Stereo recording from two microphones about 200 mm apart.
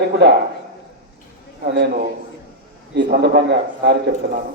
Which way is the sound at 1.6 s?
50° right (ahead or behind).